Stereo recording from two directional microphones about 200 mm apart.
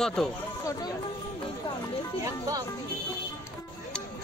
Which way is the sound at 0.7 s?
20° left (ahead or behind).